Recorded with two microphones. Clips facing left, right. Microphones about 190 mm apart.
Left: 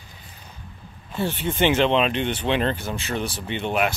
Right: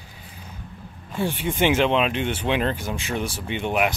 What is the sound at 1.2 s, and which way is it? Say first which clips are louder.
Speech: even; 10° right (ahead or behind).